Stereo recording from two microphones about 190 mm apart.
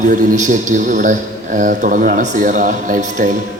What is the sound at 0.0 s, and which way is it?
A man's voice, 45° right (ahead or behind).